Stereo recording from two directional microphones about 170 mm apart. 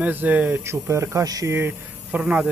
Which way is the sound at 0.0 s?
10° right (ahead or behind).